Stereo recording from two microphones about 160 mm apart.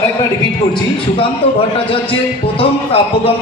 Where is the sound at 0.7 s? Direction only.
35° left (ahead or behind).